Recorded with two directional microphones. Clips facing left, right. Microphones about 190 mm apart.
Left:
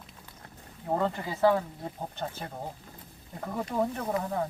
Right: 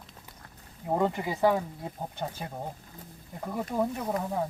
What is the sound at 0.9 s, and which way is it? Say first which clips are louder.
Speech: right 2 dB; 15° right (ahead or behind).